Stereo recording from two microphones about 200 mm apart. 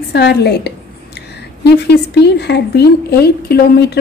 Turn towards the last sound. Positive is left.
turn(degrees=50)  # may be behind; listen again after turning